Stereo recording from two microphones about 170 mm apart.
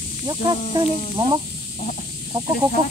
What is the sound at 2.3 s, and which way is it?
Speech, 30° right (ahead or behind).